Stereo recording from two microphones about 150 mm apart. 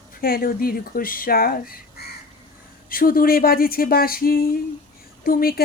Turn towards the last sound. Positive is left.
turn(degrees=80)